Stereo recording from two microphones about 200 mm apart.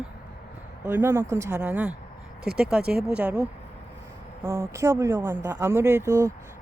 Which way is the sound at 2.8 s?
50° right (ahead or behind).